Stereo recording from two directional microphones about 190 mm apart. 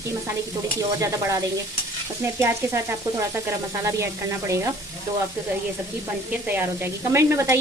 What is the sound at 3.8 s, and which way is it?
Speech, 15° right (ahead or behind).